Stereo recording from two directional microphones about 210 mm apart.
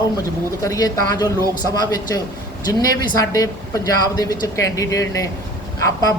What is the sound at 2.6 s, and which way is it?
Speech, 20° left (ahead or behind).